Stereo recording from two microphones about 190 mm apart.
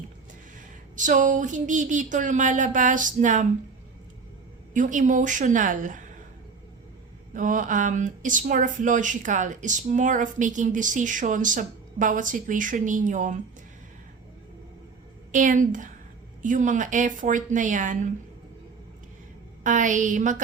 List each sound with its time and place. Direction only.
0.9 s speech: 40° right (ahead or behind)
4.7 s speech: 40° right (ahead or behind)
7.3 s speech: 45° right (ahead or behind)
15.3 s speech: 40° right (ahead or behind)
19.6 s speech: 40° right (ahead or behind)